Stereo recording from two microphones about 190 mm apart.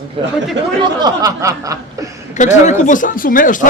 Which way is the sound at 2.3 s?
40° left (ahead or behind).